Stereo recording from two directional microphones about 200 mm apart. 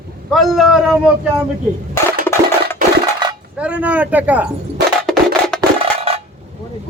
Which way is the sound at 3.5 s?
5° right (ahead or behind).